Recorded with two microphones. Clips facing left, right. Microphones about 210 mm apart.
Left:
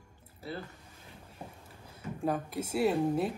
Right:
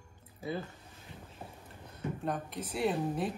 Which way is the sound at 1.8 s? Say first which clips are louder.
Left 2 dB; 5° left (ahead or behind).